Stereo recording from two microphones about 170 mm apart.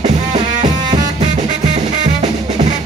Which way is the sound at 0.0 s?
45° right (ahead or behind).